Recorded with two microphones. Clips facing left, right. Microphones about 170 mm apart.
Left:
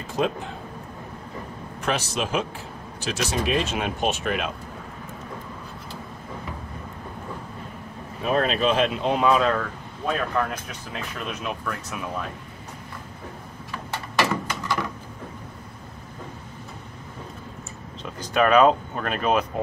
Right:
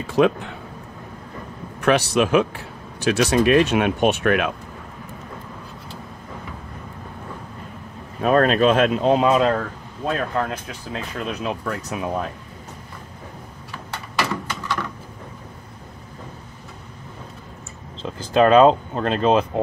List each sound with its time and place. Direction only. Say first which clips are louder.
0.0 s speech: right 7 dB; 70° right (ahead or behind)
1.8 s speech: right 9 dB; 65° right (ahead or behind)
8.2 s speech: right 6 dB; 50° right (ahead or behind); by 12.0 s 35° right (ahead or behind)
14.3 s a sound: even; 10° left (ahead or behind)
18.0 s speech: right 5 dB; 30° right (ahead or behind)